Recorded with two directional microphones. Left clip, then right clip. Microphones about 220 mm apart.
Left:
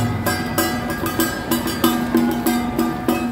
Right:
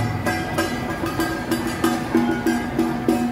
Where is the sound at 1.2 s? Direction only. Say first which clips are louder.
Left 2 dB; 40° left (ahead or behind).